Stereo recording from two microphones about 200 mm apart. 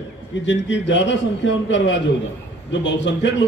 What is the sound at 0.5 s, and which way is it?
A man's voice, 65° left (ahead or behind).